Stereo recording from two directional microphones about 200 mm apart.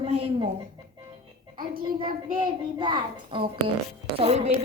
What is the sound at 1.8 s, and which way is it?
A woman's voice, 25° right (ahead or behind).